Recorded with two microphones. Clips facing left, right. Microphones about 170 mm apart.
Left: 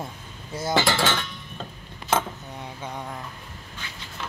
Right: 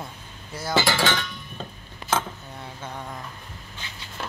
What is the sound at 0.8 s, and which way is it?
Music, 5° right (ahead or behind).